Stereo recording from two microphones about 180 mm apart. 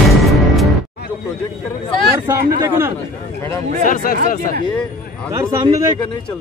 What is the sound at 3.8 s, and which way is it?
Speech, 50° left (ahead or behind).